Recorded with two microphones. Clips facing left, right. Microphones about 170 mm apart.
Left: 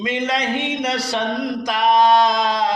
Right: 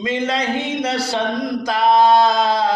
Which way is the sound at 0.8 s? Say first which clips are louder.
Right 1 dB; 30° right (ahead or behind).